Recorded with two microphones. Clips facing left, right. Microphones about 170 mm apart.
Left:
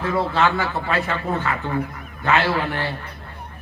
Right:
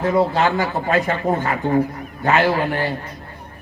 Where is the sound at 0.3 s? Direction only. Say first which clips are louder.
Right 2 dB; 40° right (ahead or behind).